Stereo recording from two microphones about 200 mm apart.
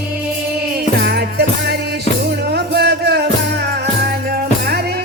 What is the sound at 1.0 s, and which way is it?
Music, 55° right (ahead or behind).